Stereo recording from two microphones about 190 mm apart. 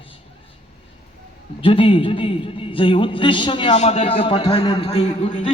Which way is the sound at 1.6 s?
30° left (ahead or behind).